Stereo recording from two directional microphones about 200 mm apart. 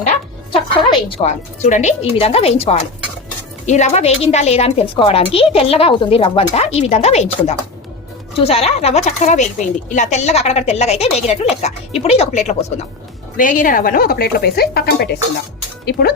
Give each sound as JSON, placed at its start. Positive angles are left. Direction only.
{"t": 0.5, "sound": "speech", "side_deg": 25}